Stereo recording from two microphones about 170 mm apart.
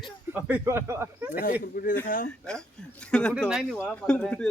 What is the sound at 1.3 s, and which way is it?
Speech, 55° left (ahead or behind).